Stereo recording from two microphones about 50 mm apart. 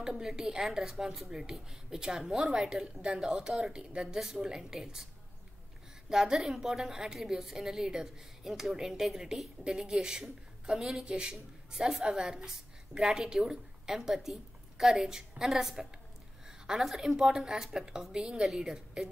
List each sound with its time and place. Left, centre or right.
0.0 s a woman's voice: centre
6.0 s a woman's voice: centre